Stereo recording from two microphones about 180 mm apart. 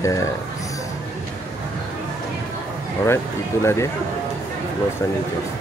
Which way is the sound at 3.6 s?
15° left (ahead or behind).